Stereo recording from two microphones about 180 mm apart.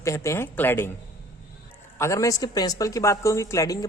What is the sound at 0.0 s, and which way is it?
Speech, 15° left (ahead or behind).